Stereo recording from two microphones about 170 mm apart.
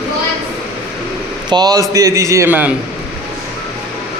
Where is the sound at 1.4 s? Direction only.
25° right (ahead or behind).